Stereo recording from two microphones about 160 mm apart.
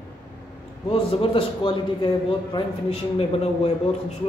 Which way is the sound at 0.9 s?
35° left (ahead or behind).